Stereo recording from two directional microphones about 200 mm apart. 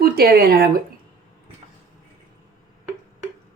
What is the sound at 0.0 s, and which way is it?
Speech, 50° right (ahead or behind).